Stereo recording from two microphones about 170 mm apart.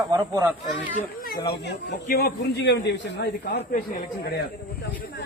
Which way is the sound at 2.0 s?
65° left (ahead or behind).